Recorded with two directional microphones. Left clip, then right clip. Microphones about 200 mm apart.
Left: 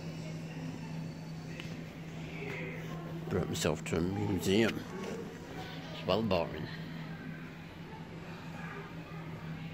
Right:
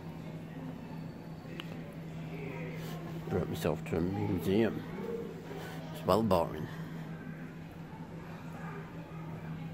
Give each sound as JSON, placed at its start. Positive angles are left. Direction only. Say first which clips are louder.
{"t": 3.3, "sound": "speech", "louder": "even", "side_deg": 0}
{"t": 6.0, "sound": "speech", "louder": "right 3 dB", "side_deg": -25}